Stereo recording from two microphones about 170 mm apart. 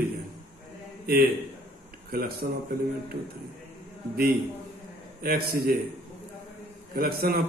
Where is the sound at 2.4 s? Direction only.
75° right (ahead or behind).